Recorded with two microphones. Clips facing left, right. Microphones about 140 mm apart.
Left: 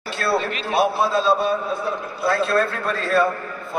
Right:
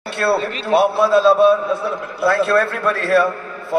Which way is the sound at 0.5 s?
35° right (ahead or behind).